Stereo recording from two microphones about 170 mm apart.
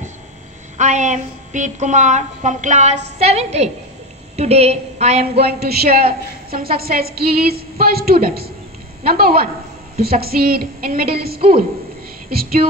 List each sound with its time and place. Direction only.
0.7 s a woman's voice: 45° right (ahead or behind)
5.4 s a woman's voice: 65° right (ahead or behind)